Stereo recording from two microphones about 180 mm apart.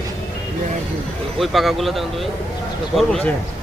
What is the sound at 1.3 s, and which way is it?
Speech, centre (ahead or behind).